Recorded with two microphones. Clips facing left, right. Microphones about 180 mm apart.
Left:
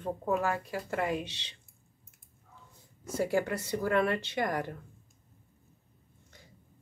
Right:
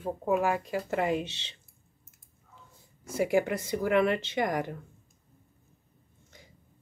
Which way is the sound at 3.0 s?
10° right (ahead or behind).